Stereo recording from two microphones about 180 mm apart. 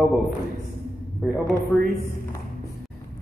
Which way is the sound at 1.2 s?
Centre (ahead or behind).